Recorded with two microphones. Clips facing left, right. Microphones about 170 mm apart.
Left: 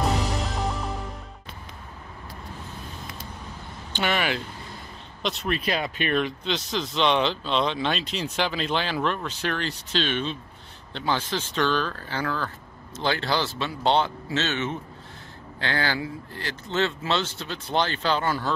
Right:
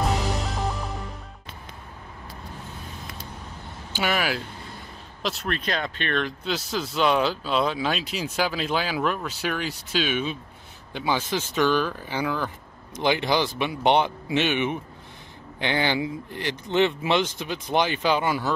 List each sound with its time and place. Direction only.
3.9 s speech: 5° right (ahead or behind)